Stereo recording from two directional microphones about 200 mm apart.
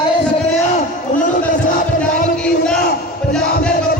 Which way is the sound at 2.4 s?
5° left (ahead or behind).